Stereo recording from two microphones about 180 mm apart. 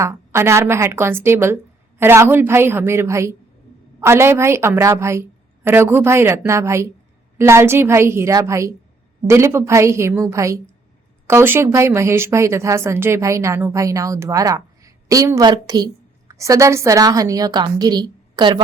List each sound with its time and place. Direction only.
0.0 s a woman's voice: 15° right (ahead or behind)